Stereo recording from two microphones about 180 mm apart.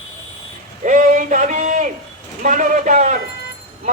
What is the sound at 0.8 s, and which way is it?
A man's voice, 45° right (ahead or behind).